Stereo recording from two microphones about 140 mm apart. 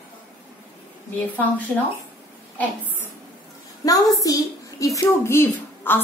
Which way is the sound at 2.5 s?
10° left (ahead or behind).